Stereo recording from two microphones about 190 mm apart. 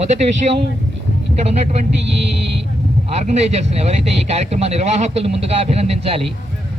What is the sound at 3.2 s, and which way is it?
Speech, 35° right (ahead or behind).